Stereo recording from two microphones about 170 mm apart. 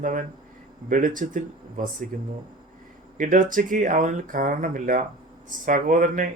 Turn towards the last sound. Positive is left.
turn(degrees=-50)  # may be behind; listen again after turning